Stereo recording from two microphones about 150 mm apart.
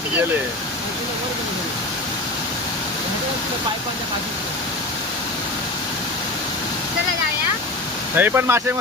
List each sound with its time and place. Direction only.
8.1 s speech: 15° right (ahead or behind)